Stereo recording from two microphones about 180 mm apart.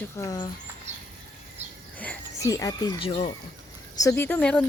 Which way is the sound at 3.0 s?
30° left (ahead or behind).